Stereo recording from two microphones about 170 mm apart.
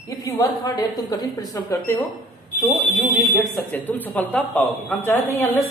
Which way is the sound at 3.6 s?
10° left (ahead or behind).